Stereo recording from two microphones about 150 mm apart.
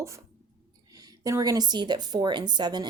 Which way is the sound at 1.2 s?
25° right (ahead or behind).